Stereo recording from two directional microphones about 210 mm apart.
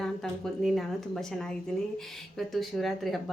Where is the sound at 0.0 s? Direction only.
Centre (ahead or behind).